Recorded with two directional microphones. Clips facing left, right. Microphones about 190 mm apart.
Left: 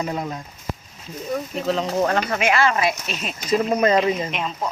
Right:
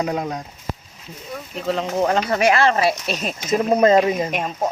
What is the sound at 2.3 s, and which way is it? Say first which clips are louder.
Speech: right 3 dB; 35° right (ahead or behind).